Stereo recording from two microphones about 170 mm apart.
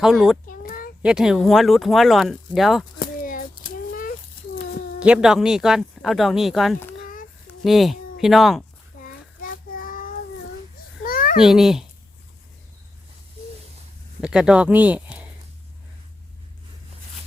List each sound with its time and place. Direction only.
0.0 s speech: 5° right (ahead or behind)
0.4 s a sound: 55° left (ahead or behind)
1.0 s speech: 5° right (ahead or behind)
3.0 s a sound: 55° left (ahead or behind)
4.9 s speech: 5° right (ahead or behind)
7.0 s a sound: 55° left (ahead or behind)
7.6 s speech: centre (ahead or behind)
9.0 s child singing: 55° left (ahead or behind)
11.0 s babbling: 55° left (ahead or behind)
11.3 s speech: centre (ahead or behind)
14.2 s speech: 5° right (ahead or behind)